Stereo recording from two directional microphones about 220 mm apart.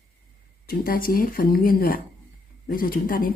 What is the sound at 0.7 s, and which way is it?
Speech, 40° left (ahead or behind).